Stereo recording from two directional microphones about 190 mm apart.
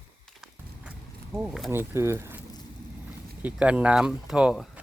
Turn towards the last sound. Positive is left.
turn(degrees=-5)  # may be behind; listen again after turning